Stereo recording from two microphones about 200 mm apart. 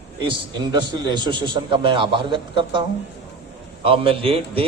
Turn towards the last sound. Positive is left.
turn(degrees=-30)  # may be behind; listen again after turning